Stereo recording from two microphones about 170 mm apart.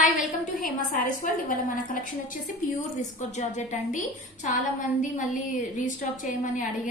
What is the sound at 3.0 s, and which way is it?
A woman's voice, 45° left (ahead or behind).